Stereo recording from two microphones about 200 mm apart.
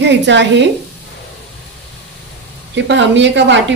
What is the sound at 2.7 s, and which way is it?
A woman's voice, 65° right (ahead or behind).